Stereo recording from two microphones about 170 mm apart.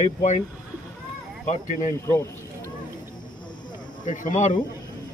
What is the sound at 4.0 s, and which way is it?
Speech, 45° left (ahead or behind).